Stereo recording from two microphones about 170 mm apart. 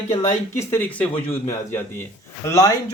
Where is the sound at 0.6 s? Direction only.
10° left (ahead or behind).